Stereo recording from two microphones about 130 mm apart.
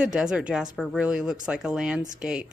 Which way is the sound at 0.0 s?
5° right (ahead or behind).